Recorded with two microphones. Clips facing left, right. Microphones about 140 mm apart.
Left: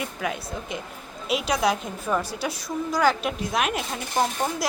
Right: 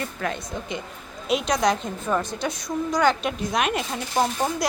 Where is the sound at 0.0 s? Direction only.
5° left (ahead or behind).